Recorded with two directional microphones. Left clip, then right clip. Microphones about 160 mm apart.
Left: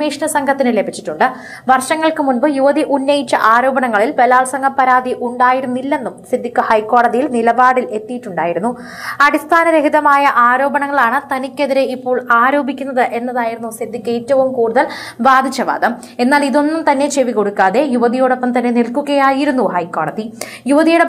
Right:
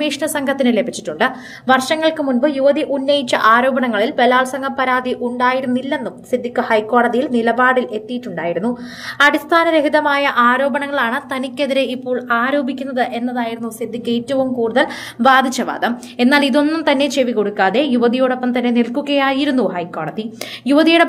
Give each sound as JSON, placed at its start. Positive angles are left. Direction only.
{"t": 0.0, "sound": "a woman's voice", "side_deg": -10}
{"t": 7.2, "sound": "a woman's voice", "side_deg": 0}
{"t": 9.2, "sound": "a woman's voice", "side_deg": -5}
{"t": 9.7, "sound": "a woman's voice", "side_deg": -20}
{"t": 10.0, "sound": "a woman's voice", "side_deg": -5}